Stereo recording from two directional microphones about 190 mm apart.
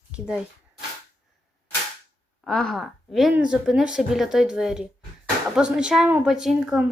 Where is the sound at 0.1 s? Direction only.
5° right (ahead or behind).